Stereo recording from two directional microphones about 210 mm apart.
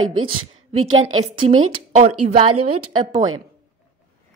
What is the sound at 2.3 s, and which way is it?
Speech, 25° right (ahead or behind).